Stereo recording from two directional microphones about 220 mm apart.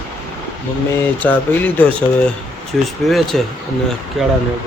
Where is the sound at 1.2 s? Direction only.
10° left (ahead or behind).